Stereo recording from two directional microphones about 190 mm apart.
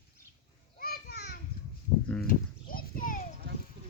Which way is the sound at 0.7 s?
50° left (ahead or behind).